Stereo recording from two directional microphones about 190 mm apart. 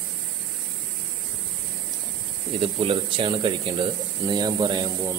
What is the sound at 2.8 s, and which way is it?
Speech, 25° right (ahead or behind).